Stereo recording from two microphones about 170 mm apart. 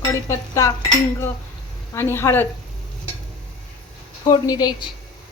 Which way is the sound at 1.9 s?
15° left (ahead or behind).